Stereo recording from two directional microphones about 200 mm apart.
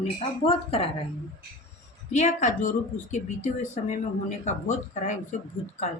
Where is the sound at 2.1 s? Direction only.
35° left (ahead or behind).